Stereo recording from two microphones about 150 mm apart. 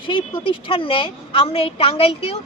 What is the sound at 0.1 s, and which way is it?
A woman's voice, 35° left (ahead or behind).